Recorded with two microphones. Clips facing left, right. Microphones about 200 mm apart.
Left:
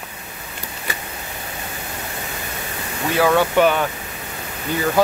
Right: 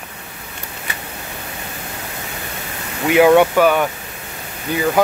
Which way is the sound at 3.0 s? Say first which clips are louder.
Right 6 dB; 15° right (ahead or behind).